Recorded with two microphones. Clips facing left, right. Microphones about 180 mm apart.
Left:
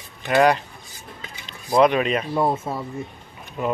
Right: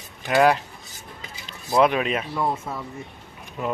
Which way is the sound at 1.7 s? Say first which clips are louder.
Left 2 dB; 5° right (ahead or behind).